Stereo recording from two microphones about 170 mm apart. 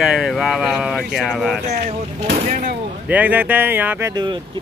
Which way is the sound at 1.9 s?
35° right (ahead or behind).